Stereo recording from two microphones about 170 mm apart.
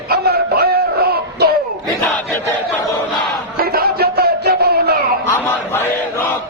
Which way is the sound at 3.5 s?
60° right (ahead or behind).